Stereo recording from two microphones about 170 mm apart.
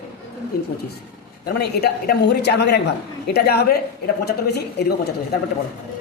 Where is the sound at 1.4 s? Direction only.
75° left (ahead or behind).